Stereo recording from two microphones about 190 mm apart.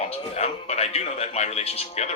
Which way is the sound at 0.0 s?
35° left (ahead or behind).